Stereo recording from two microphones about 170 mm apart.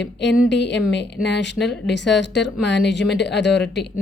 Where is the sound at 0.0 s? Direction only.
90° left.